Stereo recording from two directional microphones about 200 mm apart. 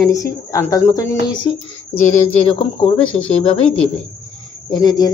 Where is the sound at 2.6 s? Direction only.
25° left (ahead or behind).